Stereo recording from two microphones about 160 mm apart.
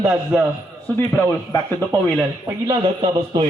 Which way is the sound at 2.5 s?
25° right (ahead or behind).